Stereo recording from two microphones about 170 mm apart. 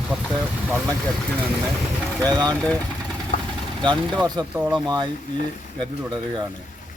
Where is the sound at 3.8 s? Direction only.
25° right (ahead or behind).